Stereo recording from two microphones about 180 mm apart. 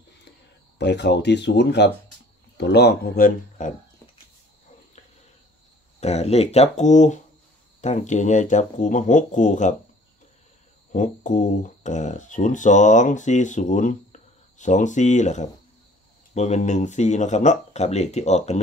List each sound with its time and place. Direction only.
0.7 s speech: 70° left (ahead or behind); by 3.7 s 45° left (ahead or behind)
5.9 s speech: 35° left (ahead or behind)
10.9 s speech: 45° left (ahead or behind)